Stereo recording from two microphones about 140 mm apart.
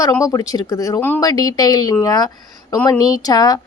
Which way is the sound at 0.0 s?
25° left (ahead or behind).